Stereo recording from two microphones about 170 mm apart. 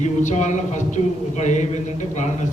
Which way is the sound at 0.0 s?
45° left (ahead or behind).